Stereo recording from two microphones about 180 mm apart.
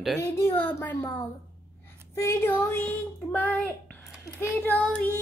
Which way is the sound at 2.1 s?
15° left (ahead or behind).